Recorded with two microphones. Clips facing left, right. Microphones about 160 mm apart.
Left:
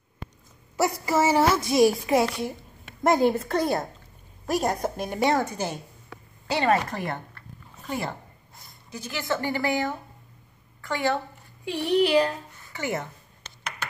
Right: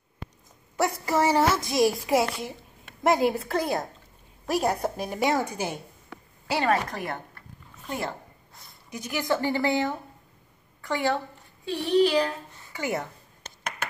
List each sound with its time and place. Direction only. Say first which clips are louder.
1.0 s speech: left 1 dB; 5° left (ahead or behind)
8.9 s a woman's voice: right 2 dB; 15° right (ahead or behind)
11.6 s speech: right 1 dB; 15° left (ahead or behind)
12.7 s a woman's voice: even; 10° right (ahead or behind)
13.4 s a sound: right 2 dB; 45° right (ahead or behind)